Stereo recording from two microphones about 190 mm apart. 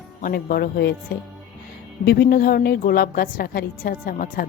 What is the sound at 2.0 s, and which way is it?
A woman's voice, 60° left (ahead or behind).